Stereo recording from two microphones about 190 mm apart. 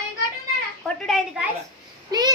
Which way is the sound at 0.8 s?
Centre (ahead or behind).